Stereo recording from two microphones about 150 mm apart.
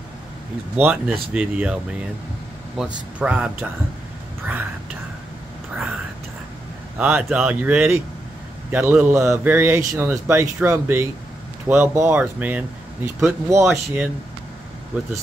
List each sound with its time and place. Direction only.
0.7 s speech: 10° right (ahead or behind)
2.8 s speech: 5° right (ahead or behind)
7.0 s speech: 10° right (ahead or behind)